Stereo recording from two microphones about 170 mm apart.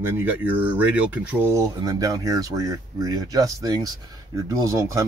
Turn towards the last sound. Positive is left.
turn(degrees=-20)  # may be behind; listen again after turning